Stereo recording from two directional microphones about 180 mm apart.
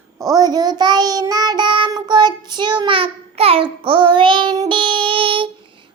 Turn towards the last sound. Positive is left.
turn(degrees=-30)  # may be behind; listen again after turning